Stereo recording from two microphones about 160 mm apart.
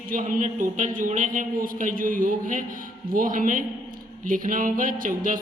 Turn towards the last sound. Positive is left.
turn(degrees=-60)  # may be behind; listen again after turning